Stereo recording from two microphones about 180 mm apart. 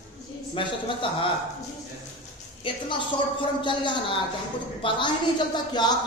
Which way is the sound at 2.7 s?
30° left (ahead or behind).